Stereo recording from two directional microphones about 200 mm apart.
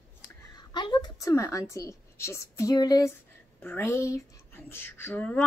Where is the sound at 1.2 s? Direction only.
15° left (ahead or behind).